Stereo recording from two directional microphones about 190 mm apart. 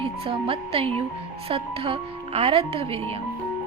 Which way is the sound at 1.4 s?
30° right (ahead or behind).